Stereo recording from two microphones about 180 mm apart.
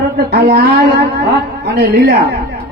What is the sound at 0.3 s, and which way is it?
A woman's voice, 60° right (ahead or behind).